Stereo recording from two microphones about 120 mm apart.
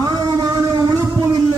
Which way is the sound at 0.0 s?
35° right (ahead or behind).